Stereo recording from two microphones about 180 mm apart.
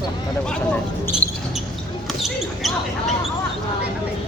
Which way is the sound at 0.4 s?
5° left (ahead or behind).